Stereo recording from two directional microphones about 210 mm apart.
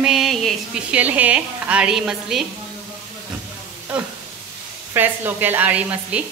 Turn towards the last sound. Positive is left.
turn(degrees=-10)  # may be behind; listen again after turning